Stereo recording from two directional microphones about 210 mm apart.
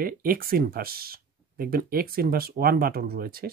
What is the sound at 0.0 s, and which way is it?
Speech, 45° right (ahead or behind).